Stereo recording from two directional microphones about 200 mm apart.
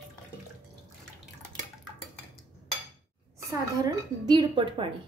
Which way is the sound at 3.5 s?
20° right (ahead or behind).